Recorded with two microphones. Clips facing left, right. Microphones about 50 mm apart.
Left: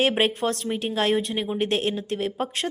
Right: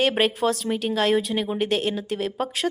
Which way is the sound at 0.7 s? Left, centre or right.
Centre.